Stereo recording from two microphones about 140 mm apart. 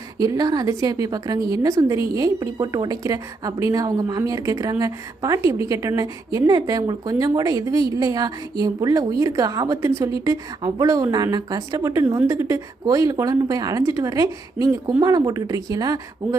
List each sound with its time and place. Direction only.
0.2 s a woman's voice: 25° right (ahead or behind)